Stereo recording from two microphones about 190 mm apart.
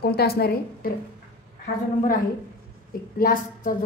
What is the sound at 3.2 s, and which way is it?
Speech, 45° left (ahead or behind).